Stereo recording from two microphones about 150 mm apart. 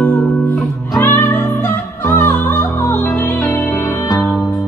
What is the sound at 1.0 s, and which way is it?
Music, 15° left (ahead or behind).